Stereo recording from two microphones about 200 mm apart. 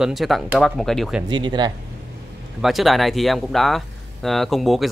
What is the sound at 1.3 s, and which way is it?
Speech, 20° right (ahead or behind).